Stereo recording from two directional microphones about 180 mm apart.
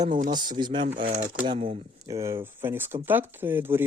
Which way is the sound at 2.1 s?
15° right (ahead or behind).